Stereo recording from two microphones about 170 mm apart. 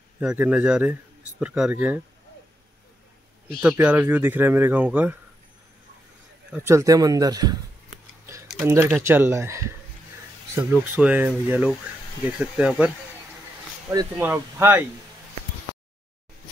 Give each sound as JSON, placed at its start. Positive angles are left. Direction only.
{"t": 0.2, "sound": "speech", "side_deg": -5}
{"t": 3.7, "sound": "speech", "side_deg": -10}
{"t": 6.5, "sound": "speech", "side_deg": -15}
{"t": 8.6, "sound": "speech", "side_deg": -15}
{"t": 13.8, "sound": "speech", "side_deg": -15}